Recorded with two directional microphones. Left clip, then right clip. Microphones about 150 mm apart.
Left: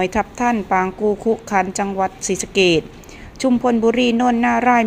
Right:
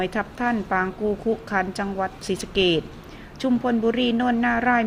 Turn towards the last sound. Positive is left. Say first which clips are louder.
# left 6 dB
turn(degrees=20)  # may be behind; listen again after turning